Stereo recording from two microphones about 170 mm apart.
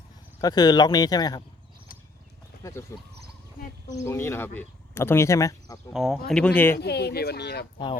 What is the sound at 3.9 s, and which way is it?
Speech, 15° left (ahead or behind).